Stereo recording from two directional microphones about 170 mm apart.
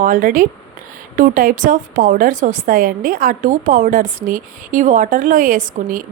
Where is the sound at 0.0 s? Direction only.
50° right (ahead or behind).